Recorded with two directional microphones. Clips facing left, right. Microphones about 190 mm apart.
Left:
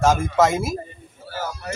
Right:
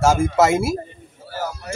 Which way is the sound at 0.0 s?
10° right (ahead or behind).